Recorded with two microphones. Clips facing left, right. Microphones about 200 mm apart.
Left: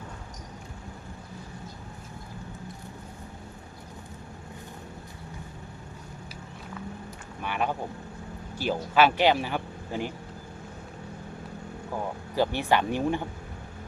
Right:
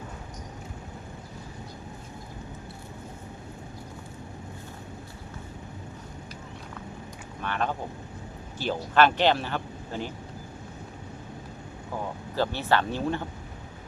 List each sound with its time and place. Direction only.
7.4 s speech: 10° left (ahead or behind)
12.4 s speech: 15° left (ahead or behind)